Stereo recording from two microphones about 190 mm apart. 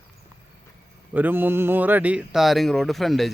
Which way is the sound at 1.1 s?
10° right (ahead or behind).